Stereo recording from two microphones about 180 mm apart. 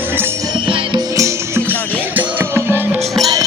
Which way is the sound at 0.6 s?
25° right (ahead or behind).